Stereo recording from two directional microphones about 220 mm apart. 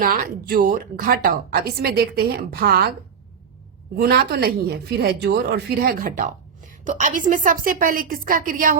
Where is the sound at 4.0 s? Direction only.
45° right (ahead or behind).